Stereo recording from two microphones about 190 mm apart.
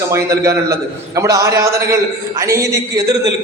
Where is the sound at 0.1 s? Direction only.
15° right (ahead or behind).